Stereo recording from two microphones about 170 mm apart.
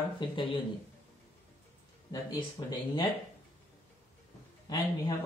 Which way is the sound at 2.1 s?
20° left (ahead or behind).